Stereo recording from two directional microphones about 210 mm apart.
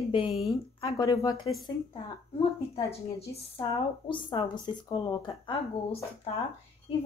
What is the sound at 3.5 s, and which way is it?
Speech, 25° left (ahead or behind).